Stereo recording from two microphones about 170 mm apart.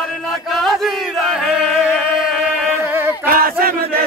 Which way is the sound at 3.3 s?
60° right (ahead or behind).